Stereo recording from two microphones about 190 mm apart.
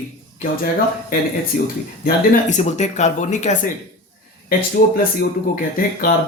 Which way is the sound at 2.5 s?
35° left (ahead or behind).